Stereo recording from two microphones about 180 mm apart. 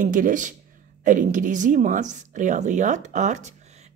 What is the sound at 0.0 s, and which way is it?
A woman's voice, 45° right (ahead or behind).